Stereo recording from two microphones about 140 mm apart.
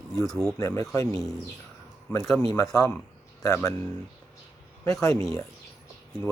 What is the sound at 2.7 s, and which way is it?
Speech, 20° left (ahead or behind).